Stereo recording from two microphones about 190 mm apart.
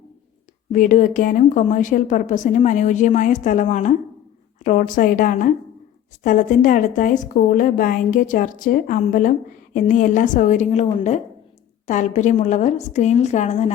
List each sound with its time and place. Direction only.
0.7 s a woman's voice: 45° left (ahead or behind)
11.9 s a woman's voice: 40° left (ahead or behind)